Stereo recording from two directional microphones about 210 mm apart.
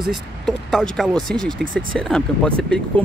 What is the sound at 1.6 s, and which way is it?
Speech, 40° right (ahead or behind).